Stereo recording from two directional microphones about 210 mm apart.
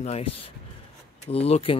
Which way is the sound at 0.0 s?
30° left (ahead or behind).